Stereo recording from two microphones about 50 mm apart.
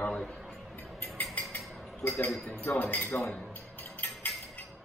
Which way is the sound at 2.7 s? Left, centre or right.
Left.